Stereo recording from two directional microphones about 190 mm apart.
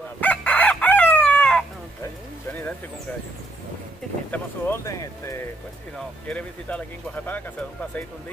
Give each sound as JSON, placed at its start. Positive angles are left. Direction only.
{"t": 0.2, "sound": "chicken", "side_deg": 5}
{"t": 4.3, "sound": "a sound", "side_deg": 15}
{"t": 5.9, "sound": "speech", "side_deg": 5}